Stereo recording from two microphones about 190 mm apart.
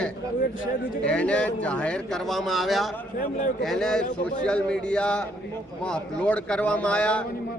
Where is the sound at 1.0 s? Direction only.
5° left (ahead or behind).